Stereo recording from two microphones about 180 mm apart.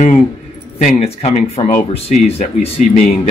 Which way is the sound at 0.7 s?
40° left (ahead or behind).